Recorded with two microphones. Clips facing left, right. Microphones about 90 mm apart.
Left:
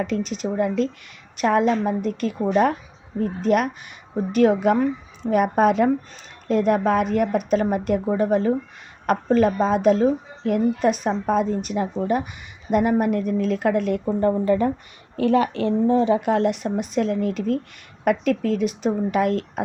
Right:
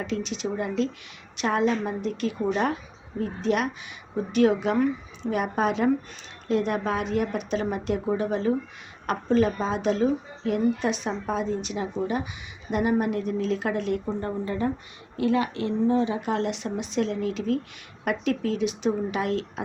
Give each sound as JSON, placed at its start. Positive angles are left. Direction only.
{"t": 0.0, "sound": "speech", "side_deg": 45}
{"t": 14.2, "sound": "speech", "side_deg": 80}
{"t": 15.9, "sound": "speech", "side_deg": 80}
{"t": 16.2, "sound": "speech", "side_deg": 50}